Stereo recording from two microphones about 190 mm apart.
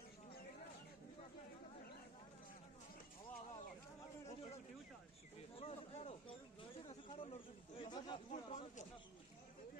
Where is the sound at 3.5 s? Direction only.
35° left (ahead or behind).